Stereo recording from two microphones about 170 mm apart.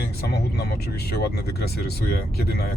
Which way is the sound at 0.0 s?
70° left (ahead or behind).